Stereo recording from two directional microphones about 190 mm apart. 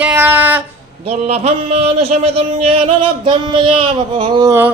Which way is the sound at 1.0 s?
35° right (ahead or behind).